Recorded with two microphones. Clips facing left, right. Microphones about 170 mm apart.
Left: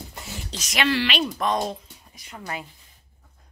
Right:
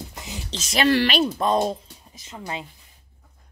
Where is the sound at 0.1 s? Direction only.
20° right (ahead or behind).